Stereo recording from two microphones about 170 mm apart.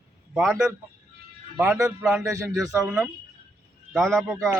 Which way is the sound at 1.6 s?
15° right (ahead or behind).